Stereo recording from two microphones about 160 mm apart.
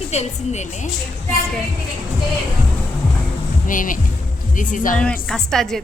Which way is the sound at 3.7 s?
55° left (ahead or behind).